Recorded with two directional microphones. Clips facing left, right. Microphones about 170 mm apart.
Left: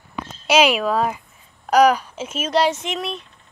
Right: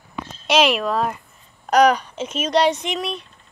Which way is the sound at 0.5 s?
5° left (ahead or behind).